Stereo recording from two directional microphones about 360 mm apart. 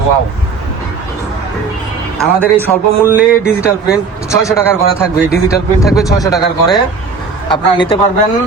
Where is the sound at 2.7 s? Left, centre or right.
Centre.